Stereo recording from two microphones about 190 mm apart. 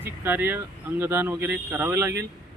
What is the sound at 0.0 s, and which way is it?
Speech, 10° right (ahead or behind).